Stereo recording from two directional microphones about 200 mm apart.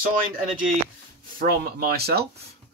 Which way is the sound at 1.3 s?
50° right (ahead or behind).